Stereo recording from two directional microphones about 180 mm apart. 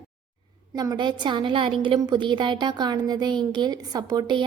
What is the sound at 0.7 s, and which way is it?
A woman's voice, 20° right (ahead or behind).